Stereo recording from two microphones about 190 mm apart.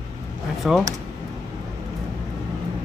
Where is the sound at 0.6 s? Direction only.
5° right (ahead or behind).